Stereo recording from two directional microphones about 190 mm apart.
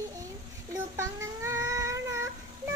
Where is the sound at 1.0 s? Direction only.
15° right (ahead or behind).